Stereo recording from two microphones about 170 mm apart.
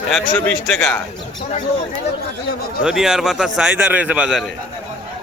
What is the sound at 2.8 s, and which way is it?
A man's voice, 5° right (ahead or behind).